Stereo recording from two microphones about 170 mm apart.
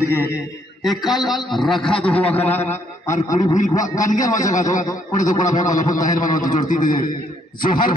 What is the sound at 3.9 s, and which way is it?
A man's voice, 50° left (ahead or behind).